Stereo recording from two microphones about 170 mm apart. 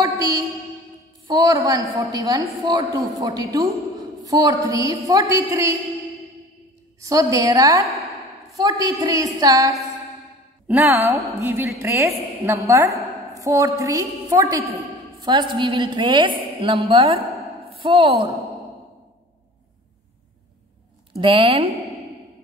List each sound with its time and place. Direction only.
0.0 s music: 20° right (ahead or behind)
1.2 s a woman's voice: 20° right (ahead or behind)
7.0 s a woman's voice: 20° right (ahead or behind)
21.1 s a woman's voice: 35° right (ahead or behind)